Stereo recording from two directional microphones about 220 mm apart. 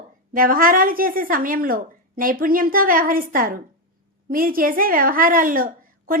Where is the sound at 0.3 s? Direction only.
40° right (ahead or behind).